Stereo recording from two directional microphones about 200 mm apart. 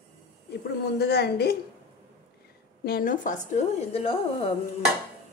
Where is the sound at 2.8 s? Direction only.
45° left (ahead or behind).